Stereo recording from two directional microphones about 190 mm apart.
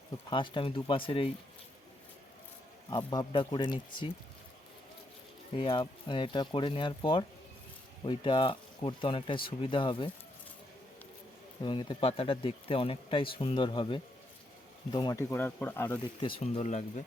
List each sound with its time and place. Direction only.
0.3 s speech: 25° left (ahead or behind)
3.1 s speech: 25° left (ahead or behind)
5.5 s speech: 25° left (ahead or behind)
11.6 s speech: 25° left (ahead or behind)
16.2 s speech: 30° left (ahead or behind)